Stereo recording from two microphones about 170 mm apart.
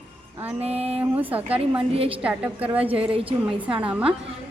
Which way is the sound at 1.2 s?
10° right (ahead or behind).